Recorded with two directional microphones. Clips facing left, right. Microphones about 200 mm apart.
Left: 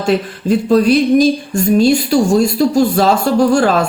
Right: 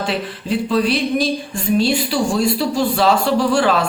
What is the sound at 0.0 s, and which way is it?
Speech, 45° left (ahead or behind).